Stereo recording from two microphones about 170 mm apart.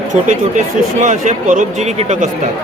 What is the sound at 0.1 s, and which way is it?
Speech, 45° right (ahead or behind).